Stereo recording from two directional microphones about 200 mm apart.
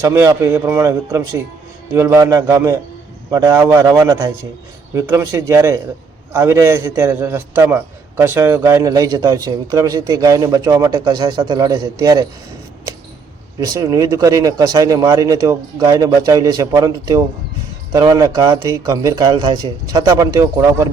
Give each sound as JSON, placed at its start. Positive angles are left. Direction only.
{"t": 0.0, "sound": "a man's voice", "side_deg": -15}
{"t": 13.6, "sound": "a man's voice", "side_deg": -15}